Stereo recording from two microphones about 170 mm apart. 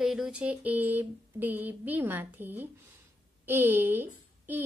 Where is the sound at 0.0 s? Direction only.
5° right (ahead or behind).